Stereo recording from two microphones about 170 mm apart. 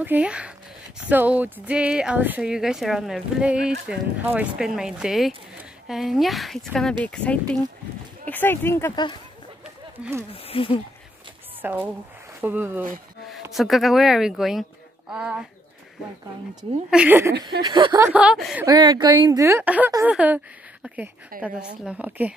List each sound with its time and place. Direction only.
0.0 s speech: 10° right (ahead or behind)
8.3 s speech: 10° left (ahead or behind)
8.9 s speech: 25° left (ahead or behind)
9.9 s speech: 10° right (ahead or behind)
10.3 s speech: 35° left (ahead or behind)
11.6 s speech: 10° right (ahead or behind)
13.3 s speech: centre (ahead or behind)
16.9 s speech: 10° right (ahead or behind)
17.4 s a woman's voice: 25° right (ahead or behind)
17.9 s speech: 10° right (ahead or behind)
18.7 s a woman's voice: 25° right (ahead or behind)
21.3 s a woman's voice: 60° right (ahead or behind)
21.8 s speech: 10° right (ahead or behind)